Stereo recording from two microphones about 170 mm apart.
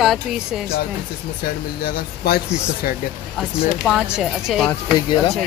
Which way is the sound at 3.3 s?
Centre (ahead or behind).